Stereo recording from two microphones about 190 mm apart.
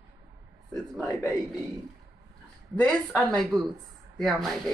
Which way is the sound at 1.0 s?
15° left (ahead or behind).